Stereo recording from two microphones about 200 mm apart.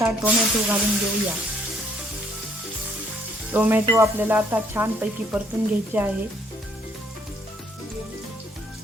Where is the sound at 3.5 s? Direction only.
10° right (ahead or behind).